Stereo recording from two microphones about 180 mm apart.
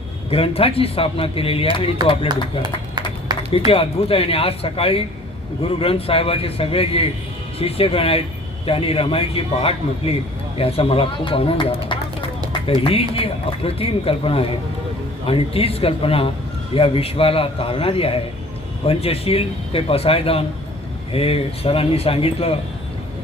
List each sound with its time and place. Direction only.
0.3 s speech: 30° left (ahead or behind)
2.2 s speech: 25° right (ahead or behind)
3.3 s a sound: 25° right (ahead or behind)
3.7 s speech: 30° left (ahead or behind)